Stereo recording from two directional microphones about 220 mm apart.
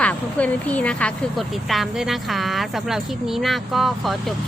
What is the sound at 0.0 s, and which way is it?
Speech, 5° left (ahead or behind).